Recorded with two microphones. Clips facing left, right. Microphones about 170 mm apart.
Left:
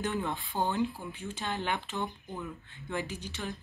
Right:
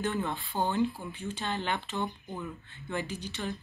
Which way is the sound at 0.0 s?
15° left (ahead or behind).